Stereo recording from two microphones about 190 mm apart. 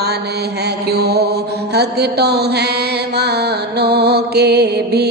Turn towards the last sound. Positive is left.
turn(degrees=-60)  # may be behind; listen again after turning